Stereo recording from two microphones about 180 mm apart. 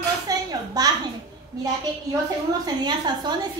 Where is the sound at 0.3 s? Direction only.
20° right (ahead or behind).